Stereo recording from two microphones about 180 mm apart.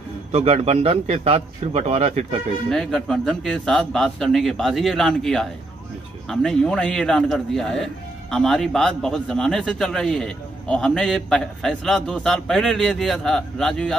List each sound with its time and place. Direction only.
0.3 s a man's voice: 35° right (ahead or behind)
2.7 s a man's voice: centre (ahead or behind)